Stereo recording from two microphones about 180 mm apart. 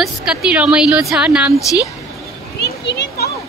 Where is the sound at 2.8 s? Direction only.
75° left (ahead or behind).